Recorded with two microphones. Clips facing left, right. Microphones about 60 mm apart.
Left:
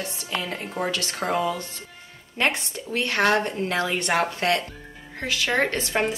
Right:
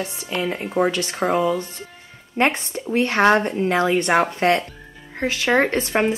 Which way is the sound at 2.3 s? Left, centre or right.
Right.